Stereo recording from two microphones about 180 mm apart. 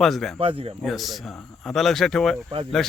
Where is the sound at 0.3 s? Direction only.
30° right (ahead or behind).